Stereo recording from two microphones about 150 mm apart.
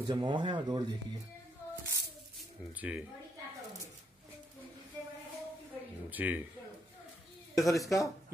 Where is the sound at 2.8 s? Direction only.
10° right (ahead or behind).